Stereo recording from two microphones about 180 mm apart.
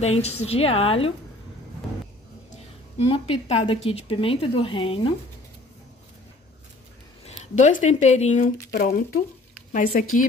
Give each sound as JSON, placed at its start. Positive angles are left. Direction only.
{"t": 0.0, "sound": "a woman's voice", "side_deg": 35}
{"t": 3.1, "sound": "a woman's voice", "side_deg": 35}
{"t": 7.2, "sound": "speech", "side_deg": 40}
{"t": 8.7, "sound": "speech", "side_deg": 50}